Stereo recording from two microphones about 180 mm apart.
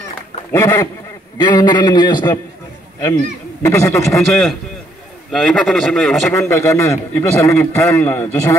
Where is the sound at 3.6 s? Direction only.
15° left (ahead or behind).